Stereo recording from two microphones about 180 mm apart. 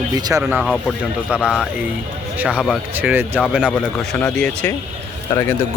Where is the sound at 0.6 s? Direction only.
Centre (ahead or behind).